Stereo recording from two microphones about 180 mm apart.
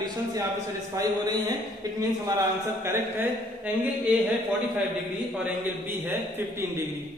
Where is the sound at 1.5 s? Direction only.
20° right (ahead or behind).